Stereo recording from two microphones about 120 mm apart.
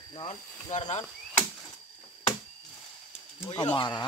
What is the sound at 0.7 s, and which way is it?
Speech, 75° left (ahead or behind).